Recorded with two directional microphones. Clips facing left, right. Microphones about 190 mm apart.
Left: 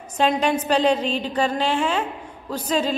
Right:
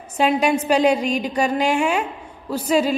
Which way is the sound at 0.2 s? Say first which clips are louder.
Right 2 dB; 10° right (ahead or behind).